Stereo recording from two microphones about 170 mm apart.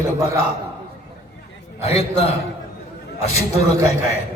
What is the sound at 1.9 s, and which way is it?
Speech, 35° left (ahead or behind).